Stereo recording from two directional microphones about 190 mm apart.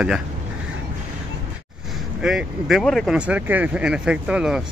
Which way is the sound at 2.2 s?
Centre (ahead or behind).